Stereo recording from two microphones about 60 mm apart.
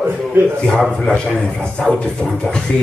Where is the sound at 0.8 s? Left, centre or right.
Centre.